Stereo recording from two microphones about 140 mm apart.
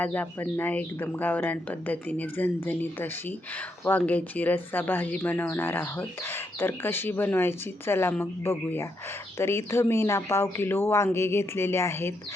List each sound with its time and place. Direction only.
0.0 s speech: 15° left (ahead or behind)